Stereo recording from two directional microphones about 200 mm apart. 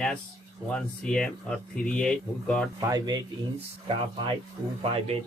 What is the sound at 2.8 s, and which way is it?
Speech, 20° right (ahead or behind).